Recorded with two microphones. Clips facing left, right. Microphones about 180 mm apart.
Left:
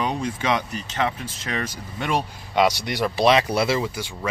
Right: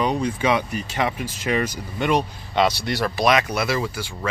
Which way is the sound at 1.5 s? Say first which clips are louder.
Right 5 dB; centre (ahead or behind).